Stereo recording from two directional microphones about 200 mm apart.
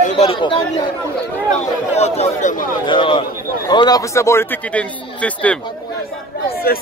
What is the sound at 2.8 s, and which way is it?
A man's voice, 25° left (ahead or behind).